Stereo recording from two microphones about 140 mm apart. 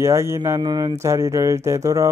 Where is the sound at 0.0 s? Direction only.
20° right (ahead or behind).